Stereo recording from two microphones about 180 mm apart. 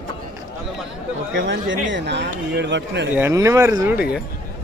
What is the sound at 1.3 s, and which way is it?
Speech, 90° right.